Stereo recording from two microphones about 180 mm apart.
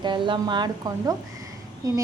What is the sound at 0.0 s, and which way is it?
A woman's voice, 25° right (ahead or behind).